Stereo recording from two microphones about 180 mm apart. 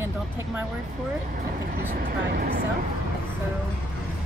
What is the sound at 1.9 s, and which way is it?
Speech, 60° right (ahead or behind).